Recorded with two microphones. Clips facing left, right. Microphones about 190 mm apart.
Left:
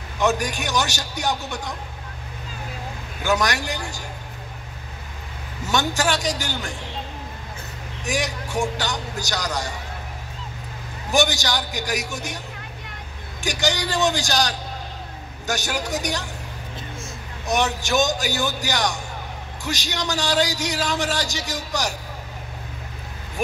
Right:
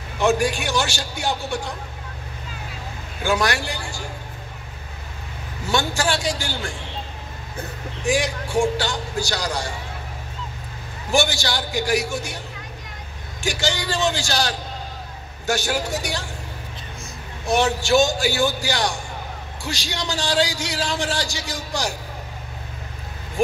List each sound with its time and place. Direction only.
0.2 s a man's voice: 20° left (ahead or behind)
3.3 s a man's voice: 20° left (ahead or behind)
5.7 s a man's voice: 20° left (ahead or behind)
8.1 s a man's voice: 20° left (ahead or behind)
11.1 s a man's voice: 20° left (ahead or behind)
13.4 s a man's voice: 15° left (ahead or behind)
15.5 s a man's voice: 20° left (ahead or behind)
17.6 s a man's voice: 20° left (ahead or behind)